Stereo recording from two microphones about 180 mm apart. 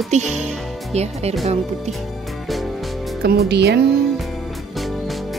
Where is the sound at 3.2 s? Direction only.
65° right (ahead or behind).